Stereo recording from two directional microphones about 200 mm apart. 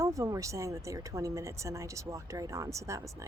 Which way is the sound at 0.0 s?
15° right (ahead or behind).